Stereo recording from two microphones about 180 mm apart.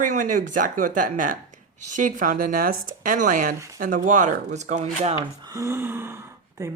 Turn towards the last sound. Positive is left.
turn(degrees=-15)  # may be behind; listen again after turning